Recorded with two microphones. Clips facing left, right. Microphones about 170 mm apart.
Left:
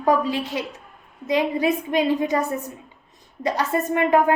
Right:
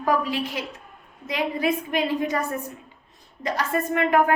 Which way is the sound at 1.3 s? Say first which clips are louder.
Left 4 dB; 20° left (ahead or behind).